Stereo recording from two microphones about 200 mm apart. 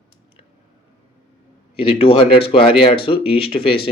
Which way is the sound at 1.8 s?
25° left (ahead or behind).